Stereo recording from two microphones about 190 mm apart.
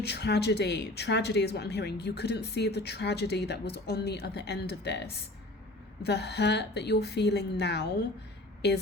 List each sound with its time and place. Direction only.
0.0 s speech: 60° left (ahead or behind)